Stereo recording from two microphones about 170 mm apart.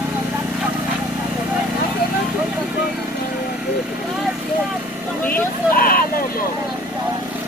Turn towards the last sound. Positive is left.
turn(degrees=60)  # may be behind; listen again after turning